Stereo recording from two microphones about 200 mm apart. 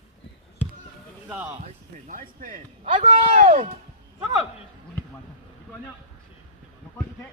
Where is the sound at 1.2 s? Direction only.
5° right (ahead or behind).